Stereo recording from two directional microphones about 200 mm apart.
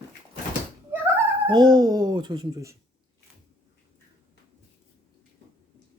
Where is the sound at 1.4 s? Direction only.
20° right (ahead or behind).